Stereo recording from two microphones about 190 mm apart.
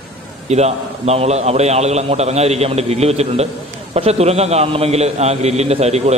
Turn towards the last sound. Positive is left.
turn(degrees=-35)  # may be behind; listen again after turning